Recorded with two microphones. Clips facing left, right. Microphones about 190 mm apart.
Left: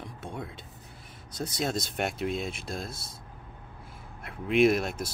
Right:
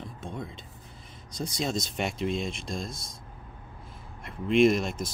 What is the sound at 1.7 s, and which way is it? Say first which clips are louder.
Speech: even; 55° left (ahead or behind).